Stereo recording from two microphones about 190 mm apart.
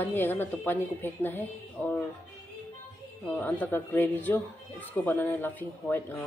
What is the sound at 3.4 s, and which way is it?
Speech, 10° left (ahead or behind).